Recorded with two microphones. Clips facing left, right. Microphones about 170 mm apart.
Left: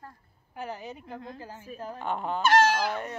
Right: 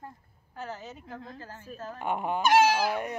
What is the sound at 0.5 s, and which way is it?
Speech, 15° left (ahead or behind).